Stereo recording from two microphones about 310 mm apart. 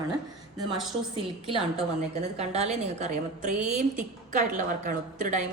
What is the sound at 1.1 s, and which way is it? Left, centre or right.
A woman's voice, centre.